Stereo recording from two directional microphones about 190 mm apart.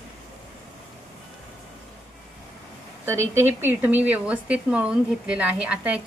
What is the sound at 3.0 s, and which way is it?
A woman's voice, 15° right (ahead or behind).